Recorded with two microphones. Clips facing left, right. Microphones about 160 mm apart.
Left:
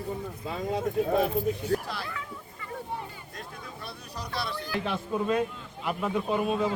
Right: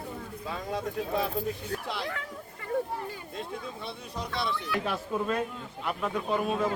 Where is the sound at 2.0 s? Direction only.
75° right (ahead or behind).